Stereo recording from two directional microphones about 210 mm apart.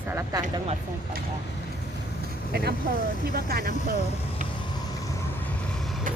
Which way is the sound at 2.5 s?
50° right (ahead or behind).